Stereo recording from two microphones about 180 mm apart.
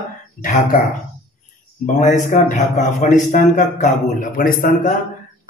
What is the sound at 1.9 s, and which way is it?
A man's voice, 45° left (ahead or behind).